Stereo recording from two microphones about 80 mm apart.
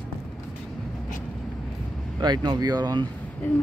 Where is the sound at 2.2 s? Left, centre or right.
Right.